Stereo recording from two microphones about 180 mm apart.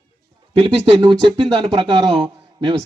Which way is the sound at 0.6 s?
30° right (ahead or behind).